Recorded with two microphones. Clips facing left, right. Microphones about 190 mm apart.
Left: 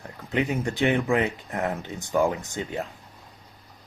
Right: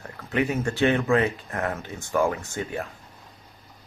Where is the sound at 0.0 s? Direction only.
15° left (ahead or behind).